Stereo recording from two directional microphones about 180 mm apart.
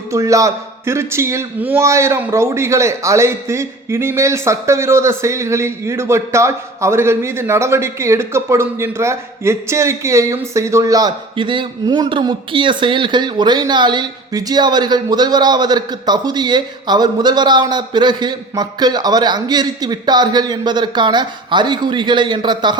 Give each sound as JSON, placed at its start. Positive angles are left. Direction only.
{"t": 0.1, "sound": "a man's voice", "side_deg": -15}